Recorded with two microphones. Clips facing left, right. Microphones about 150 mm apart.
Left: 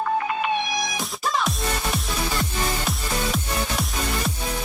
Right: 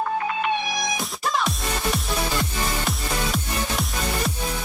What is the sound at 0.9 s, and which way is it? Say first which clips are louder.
Music: even; centre (ahead or behind).